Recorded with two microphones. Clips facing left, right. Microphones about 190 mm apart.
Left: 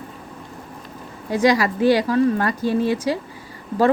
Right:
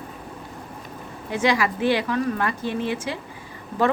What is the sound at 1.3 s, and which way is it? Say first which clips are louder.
A woman's voice: left 4 dB; 40° left (ahead or behind).